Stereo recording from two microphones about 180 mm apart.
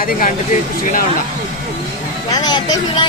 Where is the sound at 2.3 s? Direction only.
20° left (ahead or behind).